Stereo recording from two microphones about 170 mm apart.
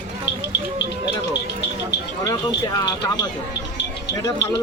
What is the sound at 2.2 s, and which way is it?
Speech, 20° left (ahead or behind).